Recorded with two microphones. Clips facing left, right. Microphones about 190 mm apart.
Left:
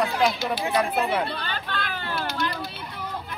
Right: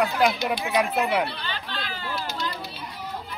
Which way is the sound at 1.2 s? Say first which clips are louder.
Left 2 dB; 50° left (ahead or behind).